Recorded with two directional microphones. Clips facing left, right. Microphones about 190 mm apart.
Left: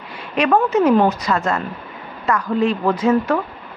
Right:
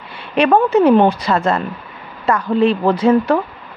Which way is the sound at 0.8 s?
30° right (ahead or behind).